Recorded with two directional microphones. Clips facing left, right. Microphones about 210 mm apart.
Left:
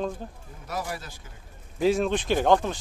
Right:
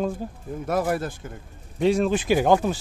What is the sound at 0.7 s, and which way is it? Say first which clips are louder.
Speech: right 9 dB; 55° right (ahead or behind).